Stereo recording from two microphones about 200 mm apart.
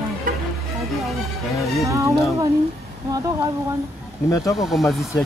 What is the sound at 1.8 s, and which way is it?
Speech, 15° right (ahead or behind).